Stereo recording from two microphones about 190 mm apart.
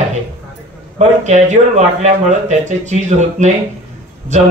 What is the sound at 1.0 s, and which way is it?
A man's voice, 40° right (ahead or behind).